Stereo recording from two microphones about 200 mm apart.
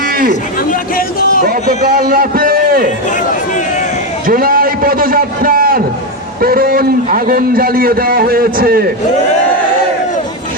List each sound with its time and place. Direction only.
0.7 s speech: 45° left (ahead or behind)
1.5 s a man's voice: 50° right (ahead or behind)
4.3 s a man's voice: 45° right (ahead or behind)